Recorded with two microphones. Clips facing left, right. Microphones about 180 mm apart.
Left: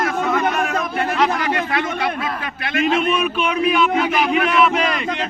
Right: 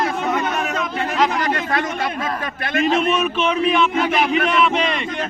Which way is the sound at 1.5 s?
45° right (ahead or behind).